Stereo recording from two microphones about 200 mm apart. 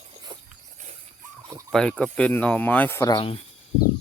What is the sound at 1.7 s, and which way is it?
Speech, 5° left (ahead or behind).